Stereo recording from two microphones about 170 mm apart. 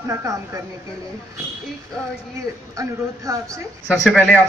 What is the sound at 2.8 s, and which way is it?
Speech, 20° right (ahead or behind).